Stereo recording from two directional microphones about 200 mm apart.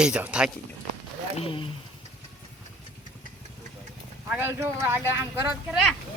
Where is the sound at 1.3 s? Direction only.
25° left (ahead or behind).